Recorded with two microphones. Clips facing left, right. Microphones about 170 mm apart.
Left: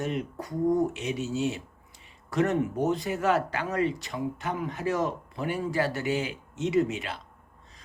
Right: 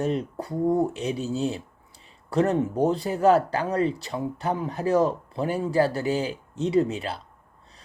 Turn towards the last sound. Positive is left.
turn(degrees=-35)  # may be behind; listen again after turning